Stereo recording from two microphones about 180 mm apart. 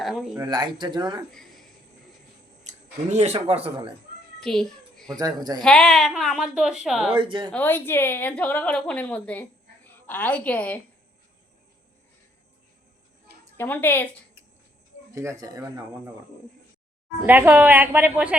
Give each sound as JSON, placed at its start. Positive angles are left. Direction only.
{"t": 0.0, "sound": "speech", "side_deg": 0}
{"t": 0.3, "sound": "speech", "side_deg": -25}
{"t": 1.3, "sound": "a sound", "side_deg": 0}
{"t": 2.6, "sound": "speech", "side_deg": -40}
{"t": 4.4, "sound": "a sound", "side_deg": 5}
{"t": 5.1, "sound": "speech", "side_deg": -20}
{"t": 5.5, "sound": "a woman's voice", "side_deg": 5}
{"t": 7.2, "sound": "speech", "side_deg": -25}
{"t": 7.5, "sound": "a woman's voice", "side_deg": 10}
{"t": 13.6, "sound": "a woman's voice", "side_deg": 10}
{"t": 15.1, "sound": "speech", "side_deg": -15}
{"t": 17.2, "sound": "a woman's voice", "side_deg": -10}